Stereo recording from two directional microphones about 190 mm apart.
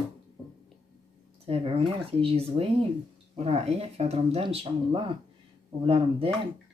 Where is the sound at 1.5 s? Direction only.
30° right (ahead or behind).